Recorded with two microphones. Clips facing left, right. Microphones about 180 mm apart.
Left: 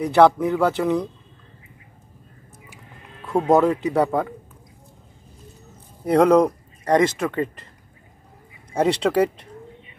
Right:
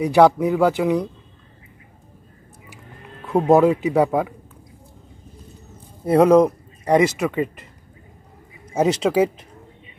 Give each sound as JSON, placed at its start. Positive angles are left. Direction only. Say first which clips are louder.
{"t": 0.0, "sound": "speech", "louder": "right 1 dB", "side_deg": -15}
{"t": 3.3, "sound": "speech", "louder": "right 2 dB", "side_deg": -25}
{"t": 3.5, "sound": "speech", "louder": "right 2 dB", "side_deg": -10}
{"t": 6.0, "sound": "speech", "louder": "right 2 dB", "side_deg": -5}
{"t": 8.7, "sound": "speech", "louder": "right 1 dB", "side_deg": -5}